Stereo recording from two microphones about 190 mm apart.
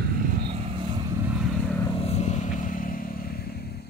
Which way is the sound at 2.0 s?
35° left (ahead or behind).